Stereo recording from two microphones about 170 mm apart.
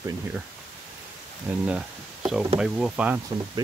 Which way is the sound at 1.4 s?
5° right (ahead or behind).